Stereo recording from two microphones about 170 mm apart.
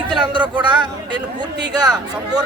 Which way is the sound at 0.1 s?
25° right (ahead or behind).